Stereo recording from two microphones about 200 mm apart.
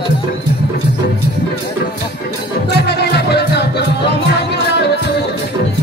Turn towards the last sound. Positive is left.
turn(degrees=55)  # may be behind; listen again after turning